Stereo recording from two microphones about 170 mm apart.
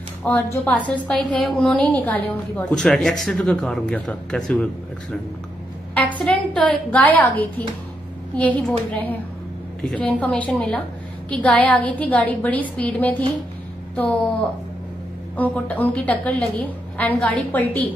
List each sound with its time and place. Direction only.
0.2 s a woman's voice: 10° left (ahead or behind)
6.1 s a woman's voice: 5° left (ahead or behind)
15.3 s a woman's voice: 10° left (ahead or behind)